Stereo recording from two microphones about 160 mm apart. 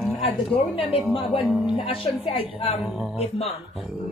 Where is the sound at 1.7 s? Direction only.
35° left (ahead or behind).